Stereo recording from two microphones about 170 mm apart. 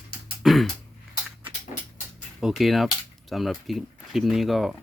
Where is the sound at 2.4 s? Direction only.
Centre (ahead or behind).